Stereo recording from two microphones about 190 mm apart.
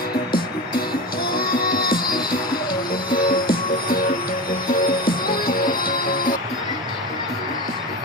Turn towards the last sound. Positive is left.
turn(degrees=50)  # may be behind; listen again after turning